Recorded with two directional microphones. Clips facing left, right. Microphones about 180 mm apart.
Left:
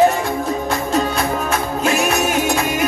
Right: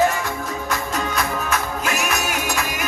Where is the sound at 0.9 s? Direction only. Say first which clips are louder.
Left 7 dB; 30° left (ahead or behind).